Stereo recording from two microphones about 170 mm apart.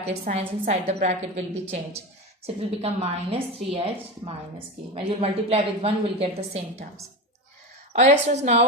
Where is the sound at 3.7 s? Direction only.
35° right (ahead or behind).